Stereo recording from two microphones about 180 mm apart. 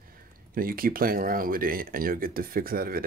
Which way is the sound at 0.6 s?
55° right (ahead or behind).